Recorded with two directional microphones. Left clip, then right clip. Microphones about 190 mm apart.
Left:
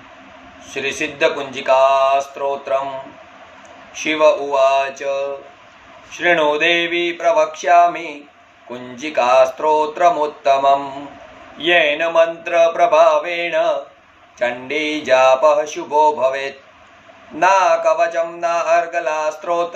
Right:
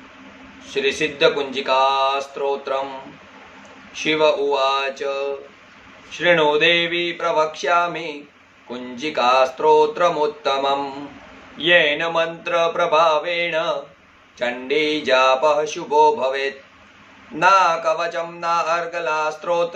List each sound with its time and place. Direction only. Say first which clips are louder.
0.7 s mantra: even; 20° right (ahead or behind)
4.0 s mantra: left 3 dB; 20° right (ahead or behind)